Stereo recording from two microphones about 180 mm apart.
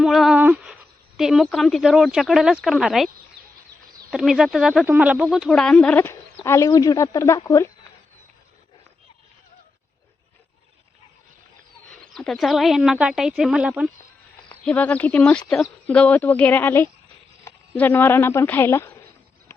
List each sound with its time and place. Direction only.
0.0 s speech: centre (ahead or behind)
4.1 s a woman's voice: centre (ahead or behind); by 7.7 s 15° left (ahead or behind)
12.1 s speech: centre (ahead or behind)
14.5 s a woman's voice: 10° left (ahead or behind)
19.5 s a sound: 15° left (ahead or behind)